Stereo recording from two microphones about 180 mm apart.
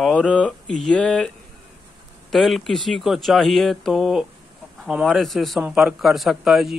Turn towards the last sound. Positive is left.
turn(degrees=0)  # may be behind; listen again after turning